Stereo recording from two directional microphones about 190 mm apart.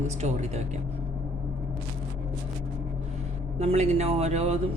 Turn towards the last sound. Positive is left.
turn(degrees=-35)  # may be behind; listen again after turning